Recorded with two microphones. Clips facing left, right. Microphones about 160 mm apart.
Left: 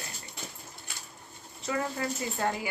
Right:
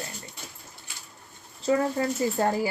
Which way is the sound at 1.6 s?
30° right (ahead or behind).